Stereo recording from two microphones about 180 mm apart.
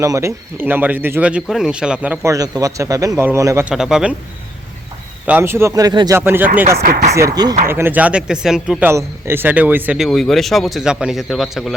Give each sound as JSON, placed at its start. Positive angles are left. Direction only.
{"t": 0.0, "sound": "speech", "side_deg": -15}
{"t": 3.7, "sound": "speech", "side_deg": -5}
{"t": 5.2, "sound": "speech", "side_deg": -10}
{"t": 6.1, "sound": "speech", "side_deg": -10}